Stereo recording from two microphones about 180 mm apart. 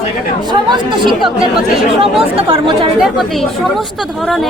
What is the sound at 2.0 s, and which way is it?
Speech, 30° right (ahead or behind).